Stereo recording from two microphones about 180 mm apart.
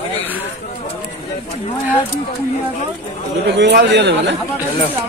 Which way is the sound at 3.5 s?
70° right (ahead or behind).